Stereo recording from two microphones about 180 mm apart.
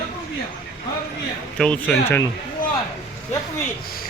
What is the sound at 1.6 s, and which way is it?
Speech, 5° left (ahead or behind).